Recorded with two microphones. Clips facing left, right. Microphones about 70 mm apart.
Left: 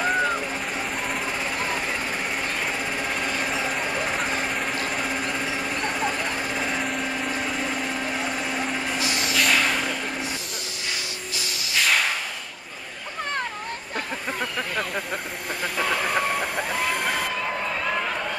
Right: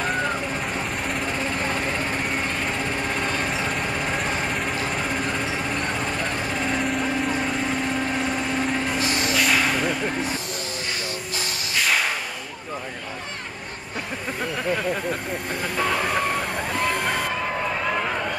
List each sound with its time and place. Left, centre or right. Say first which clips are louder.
0.0 s vehicle: left 2 dB; centre
3.2 s a sound: right 1 dB; centre
5.9 s vehicle: even; centre
9.0 s vehicle: right 2 dB; right
9.3 s vehicle: even; centre
11.7 s a sound: even; centre
15.8 s vehicle: right 1 dB; centre
17.8 s run: right 1 dB; centre